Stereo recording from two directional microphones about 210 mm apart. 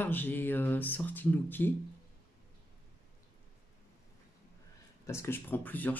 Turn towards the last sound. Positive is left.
turn(degrees=10)  # may be behind; listen again after turning